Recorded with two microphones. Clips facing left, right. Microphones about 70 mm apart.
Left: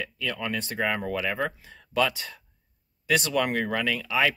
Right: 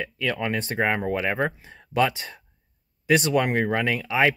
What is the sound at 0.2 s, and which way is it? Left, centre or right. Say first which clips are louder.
Speech: right 5 dB; right.